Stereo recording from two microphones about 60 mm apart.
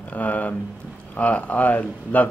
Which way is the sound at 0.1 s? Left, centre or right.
Left.